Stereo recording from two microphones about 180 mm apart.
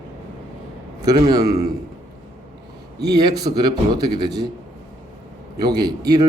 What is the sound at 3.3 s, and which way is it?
Speech, 20° right (ahead or behind).